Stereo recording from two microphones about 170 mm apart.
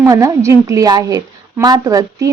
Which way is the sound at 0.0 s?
20° right (ahead or behind).